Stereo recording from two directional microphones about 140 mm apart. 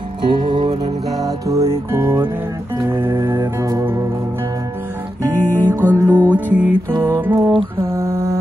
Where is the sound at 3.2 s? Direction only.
25° right (ahead or behind).